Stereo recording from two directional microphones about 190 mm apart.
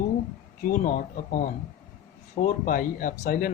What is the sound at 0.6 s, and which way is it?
Speech, 40° left (ahead or behind).